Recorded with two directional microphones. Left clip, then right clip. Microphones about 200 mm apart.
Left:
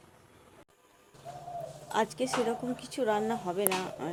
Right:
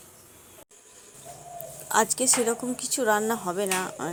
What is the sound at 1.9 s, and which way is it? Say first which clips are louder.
Speech: right 7 dB; 25° right (ahead or behind).